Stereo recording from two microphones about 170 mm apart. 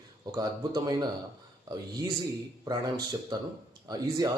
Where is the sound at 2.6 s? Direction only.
20° right (ahead or behind).